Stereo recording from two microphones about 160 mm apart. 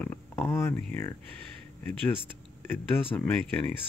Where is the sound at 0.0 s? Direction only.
15° left (ahead or behind).